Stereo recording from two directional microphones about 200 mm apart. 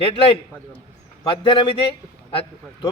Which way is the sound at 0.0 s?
30° left (ahead or behind).